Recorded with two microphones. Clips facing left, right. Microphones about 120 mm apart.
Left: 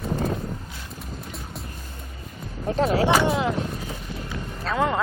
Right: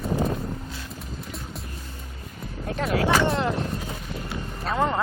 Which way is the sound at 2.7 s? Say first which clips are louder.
Left 3 dB; 30° left (ahead or behind).